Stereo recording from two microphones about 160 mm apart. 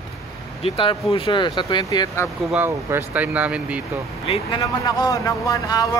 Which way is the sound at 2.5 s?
10° right (ahead or behind).